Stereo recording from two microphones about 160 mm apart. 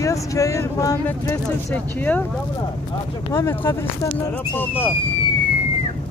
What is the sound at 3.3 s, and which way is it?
Speech, 15° left (ahead or behind).